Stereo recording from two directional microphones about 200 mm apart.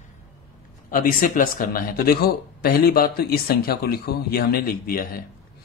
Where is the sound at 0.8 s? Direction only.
45° left (ahead or behind).